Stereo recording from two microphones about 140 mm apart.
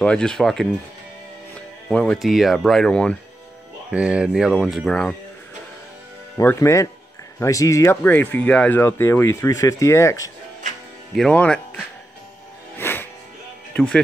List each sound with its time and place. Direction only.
0.0 s speech: 5° left (ahead or behind)
1.9 s speech: 5° left (ahead or behind)
3.9 s speech: 10° right (ahead or behind)
6.3 s speech: 20° left (ahead or behind)
11.1 s speech: 5° left (ahead or behind)
12.7 s music: 15° left (ahead or behind)
13.7 s speech: 5° left (ahead or behind)